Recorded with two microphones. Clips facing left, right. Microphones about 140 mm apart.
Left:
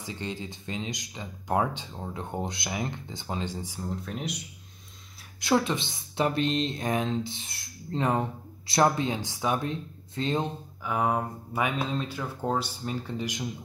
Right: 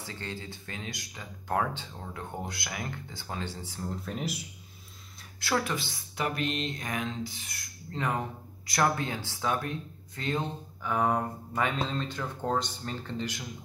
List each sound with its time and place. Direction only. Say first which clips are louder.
0.0 s speech: left 4 dB; 15° left (ahead or behind)
3.8 s speech: even; centre (ahead or behind)
5.4 s speech: left 5 dB; 20° left (ahead or behind)
10.8 s speech: even; 5° left (ahead or behind)